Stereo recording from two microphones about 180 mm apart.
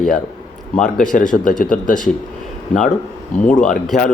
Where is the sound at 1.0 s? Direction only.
45° left (ahead or behind).